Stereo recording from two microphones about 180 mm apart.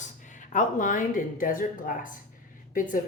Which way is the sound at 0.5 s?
45° left (ahead or behind).